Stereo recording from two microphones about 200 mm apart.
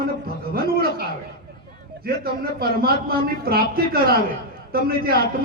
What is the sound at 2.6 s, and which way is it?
A man's voice, 50° right (ahead or behind).